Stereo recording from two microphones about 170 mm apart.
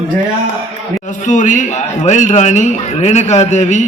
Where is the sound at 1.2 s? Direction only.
45° left (ahead or behind).